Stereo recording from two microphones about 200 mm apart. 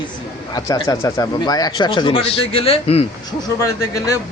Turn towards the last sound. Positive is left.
turn(degrees=15)  # may be behind; listen again after turning